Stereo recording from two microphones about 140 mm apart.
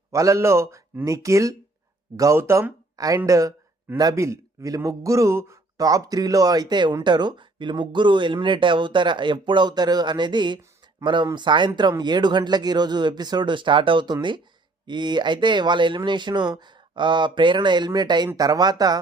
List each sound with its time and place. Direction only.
0.1 s a man's voice: 20° right (ahead or behind)